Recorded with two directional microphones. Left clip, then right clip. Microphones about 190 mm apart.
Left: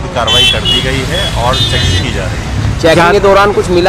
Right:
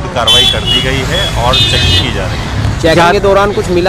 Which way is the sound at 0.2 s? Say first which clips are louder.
Right 1 dB; 10° right (ahead or behind).